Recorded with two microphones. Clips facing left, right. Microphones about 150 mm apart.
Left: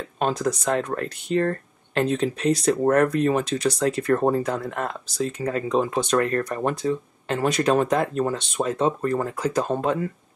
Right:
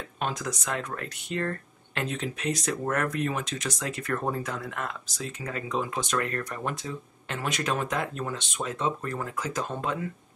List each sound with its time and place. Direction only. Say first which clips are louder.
0.2 s speech: left 9 dB; 35° left (ahead or behind)